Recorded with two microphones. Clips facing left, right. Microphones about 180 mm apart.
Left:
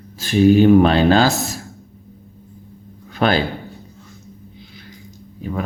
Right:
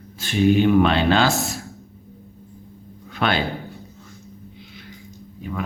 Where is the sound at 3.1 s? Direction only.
40° left (ahead or behind).